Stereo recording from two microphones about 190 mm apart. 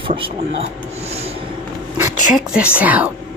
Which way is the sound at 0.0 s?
25° right (ahead or behind).